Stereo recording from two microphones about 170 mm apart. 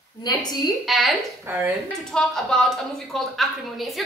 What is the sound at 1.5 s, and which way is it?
Speech, 15° right (ahead or behind).